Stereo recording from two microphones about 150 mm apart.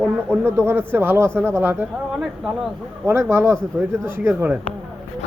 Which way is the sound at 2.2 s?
5° right (ahead or behind).